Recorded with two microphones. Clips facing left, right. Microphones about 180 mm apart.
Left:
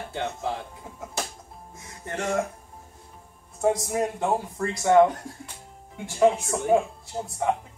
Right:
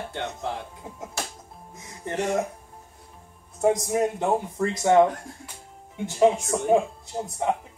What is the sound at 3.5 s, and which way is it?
Speech, 20° right (ahead or behind).